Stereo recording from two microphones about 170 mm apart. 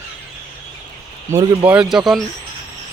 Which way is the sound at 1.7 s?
5° right (ahead or behind).